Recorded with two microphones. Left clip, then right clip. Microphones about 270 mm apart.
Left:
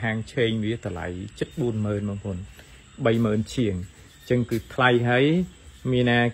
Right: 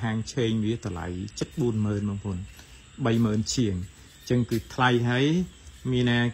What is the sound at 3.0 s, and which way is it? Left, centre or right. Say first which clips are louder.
Speech: left 4 dB; centre.